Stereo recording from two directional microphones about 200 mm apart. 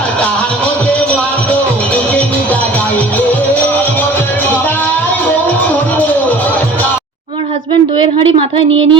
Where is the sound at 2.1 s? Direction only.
5° left (ahead or behind).